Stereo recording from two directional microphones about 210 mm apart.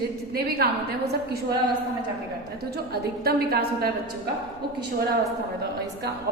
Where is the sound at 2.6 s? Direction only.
50° right (ahead or behind).